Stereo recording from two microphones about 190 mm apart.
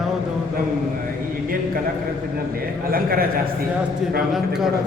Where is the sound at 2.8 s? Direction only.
50° right (ahead or behind).